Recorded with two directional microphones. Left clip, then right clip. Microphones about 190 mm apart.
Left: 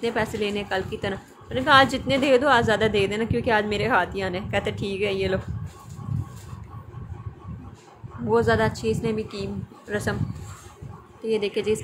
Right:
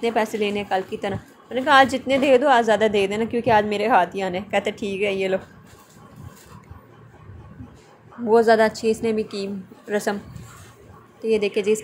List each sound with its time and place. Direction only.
0.0 s a woman's voice: 10° right (ahead or behind)
8.3 s a woman's voice: 15° right (ahead or behind)
11.2 s a woman's voice: 15° right (ahead or behind)